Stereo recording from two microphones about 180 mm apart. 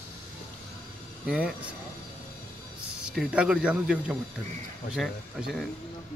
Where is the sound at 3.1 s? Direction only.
5° right (ahead or behind).